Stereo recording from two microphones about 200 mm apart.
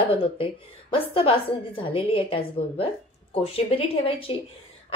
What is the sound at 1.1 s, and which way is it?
A woman's voice, 25° left (ahead or behind).